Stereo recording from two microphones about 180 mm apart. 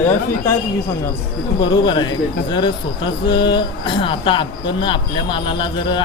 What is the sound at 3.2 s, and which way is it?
Speech, 25° left (ahead or behind).